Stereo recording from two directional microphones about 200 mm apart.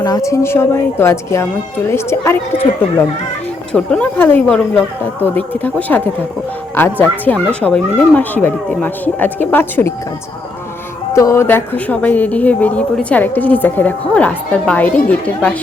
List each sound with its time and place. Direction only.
0.0 s a woman's voice: 15° left (ahead or behind)
3.7 s a woman's voice: 5° left (ahead or behind)
7.0 s a woman's voice: 5° left (ahead or behind)
11.1 s a woman's voice: 15° left (ahead or behind)